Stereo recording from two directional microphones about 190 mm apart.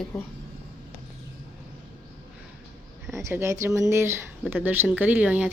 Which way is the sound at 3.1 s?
15° right (ahead or behind).